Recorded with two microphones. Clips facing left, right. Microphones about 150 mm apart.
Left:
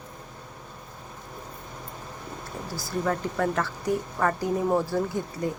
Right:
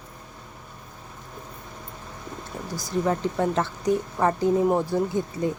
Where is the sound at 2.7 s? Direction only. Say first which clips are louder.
Right 3 dB; 20° right (ahead or behind).